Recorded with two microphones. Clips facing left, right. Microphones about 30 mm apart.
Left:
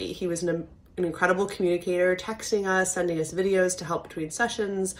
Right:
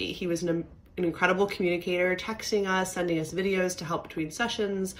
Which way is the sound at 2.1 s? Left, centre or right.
Right.